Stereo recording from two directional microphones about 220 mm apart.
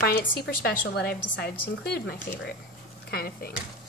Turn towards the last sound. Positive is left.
turn(degrees=45)  # may be behind; listen again after turning